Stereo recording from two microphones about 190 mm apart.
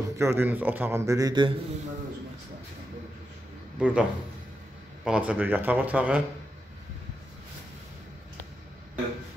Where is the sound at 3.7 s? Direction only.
5° right (ahead or behind).